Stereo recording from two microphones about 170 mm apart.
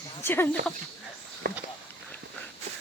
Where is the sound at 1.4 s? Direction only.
65° right (ahead or behind).